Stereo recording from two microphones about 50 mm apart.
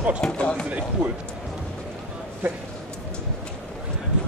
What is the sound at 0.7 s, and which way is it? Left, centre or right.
Speech, right.